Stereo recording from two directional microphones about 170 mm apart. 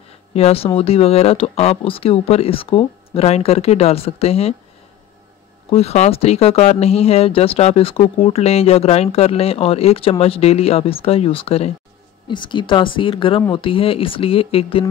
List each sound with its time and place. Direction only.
0.3 s speech: 35° left (ahead or behind)
5.7 s speech: 35° left (ahead or behind)